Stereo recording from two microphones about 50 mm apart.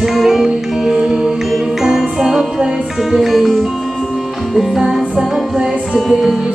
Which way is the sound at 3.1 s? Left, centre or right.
Centre.